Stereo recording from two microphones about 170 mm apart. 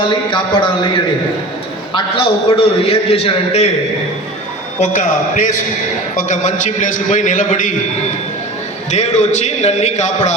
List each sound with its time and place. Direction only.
0.1 s a man's voice: 30° left (ahead or behind)
4.8 s a man's voice: 45° left (ahead or behind)
8.9 s a man's voice: 45° left (ahead or behind)